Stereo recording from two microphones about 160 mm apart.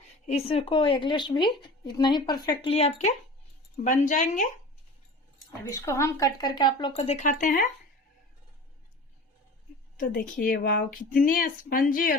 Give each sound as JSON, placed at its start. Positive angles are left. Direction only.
{"t": 0.3, "sound": "speech", "side_deg": 40}
{"t": 2.6, "sound": "speech", "side_deg": 40}
{"t": 3.8, "sound": "speech", "side_deg": 55}
{"t": 5.6, "sound": "speech", "side_deg": 20}
{"t": 6.9, "sound": "speech", "side_deg": 40}
{"t": 10.4, "sound": "speech", "side_deg": 65}